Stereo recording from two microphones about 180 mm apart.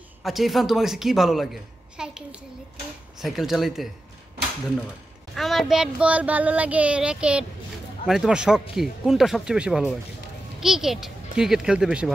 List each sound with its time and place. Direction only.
0.2 s a woman's voice: centre (ahead or behind)
5.3 s a woman's voice: centre (ahead or behind)